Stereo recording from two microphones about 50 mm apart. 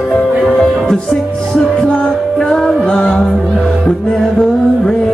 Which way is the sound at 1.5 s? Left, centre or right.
Left.